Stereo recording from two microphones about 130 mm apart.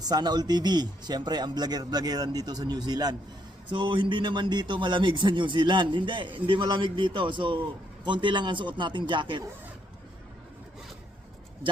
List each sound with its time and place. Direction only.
0.0 s a man's voice: 30° right (ahead or behind)